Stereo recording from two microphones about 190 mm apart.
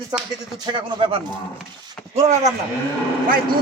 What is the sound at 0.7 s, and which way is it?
Speech, 25° right (ahead or behind).